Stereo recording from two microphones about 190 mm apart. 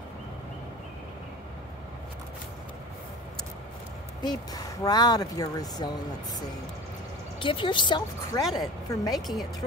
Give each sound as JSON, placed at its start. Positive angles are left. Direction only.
{"t": 4.2, "sound": "speech", "side_deg": 20}
{"t": 7.3, "sound": "a woman's voice", "side_deg": 25}
{"t": 9.1, "sound": "a woman's voice", "side_deg": 0}